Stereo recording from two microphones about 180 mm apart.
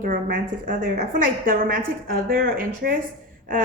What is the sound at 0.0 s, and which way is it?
A woman's voice, 50° right (ahead or behind).